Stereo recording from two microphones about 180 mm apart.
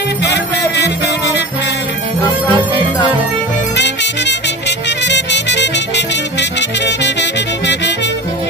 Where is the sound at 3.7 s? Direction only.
75° left (ahead or behind).